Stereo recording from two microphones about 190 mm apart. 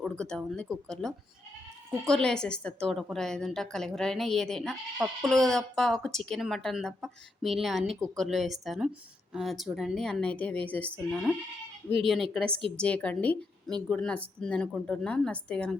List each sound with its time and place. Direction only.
0.0 s a woman's voice: 5° left (ahead or behind)
12.5 s a woman's voice: 30° right (ahead or behind)
12.8 s a woman's voice: 5° left (ahead or behind)